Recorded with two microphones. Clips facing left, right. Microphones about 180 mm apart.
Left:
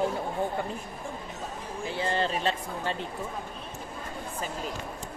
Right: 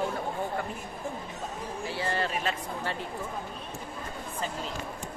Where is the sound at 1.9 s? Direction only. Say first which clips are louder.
Left 3 dB; 25° left (ahead or behind).